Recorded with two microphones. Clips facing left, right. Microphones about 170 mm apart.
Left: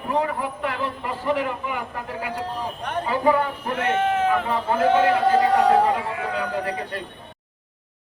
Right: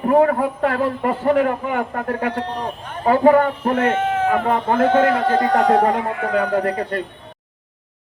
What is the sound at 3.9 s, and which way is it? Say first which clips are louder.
Sheep: right 1 dB; 10° right (ahead or behind).